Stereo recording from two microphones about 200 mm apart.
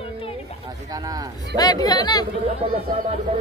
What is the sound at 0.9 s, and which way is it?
Speech, 20° right (ahead or behind).